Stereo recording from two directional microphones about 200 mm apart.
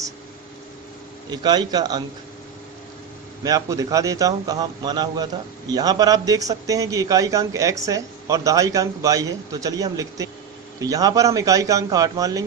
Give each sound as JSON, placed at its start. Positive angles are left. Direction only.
{"t": 1.3, "sound": "a man's voice", "side_deg": -20}
{"t": 3.4, "sound": "a man's voice", "side_deg": -15}